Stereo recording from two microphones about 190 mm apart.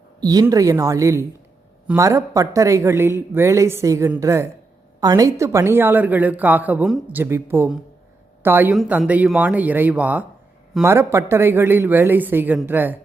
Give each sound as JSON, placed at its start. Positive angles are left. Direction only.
{"t": 0.2, "sound": "a woman's voice", "side_deg": -20}